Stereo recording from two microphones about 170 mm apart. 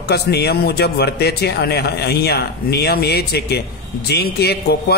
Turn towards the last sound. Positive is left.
turn(degrees=70)  # may be behind; listen again after turning